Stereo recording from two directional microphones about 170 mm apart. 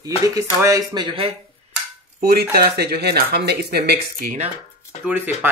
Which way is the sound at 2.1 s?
65° right (ahead or behind).